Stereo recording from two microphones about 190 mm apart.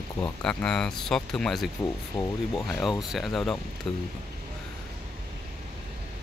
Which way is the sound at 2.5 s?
Centre (ahead or behind).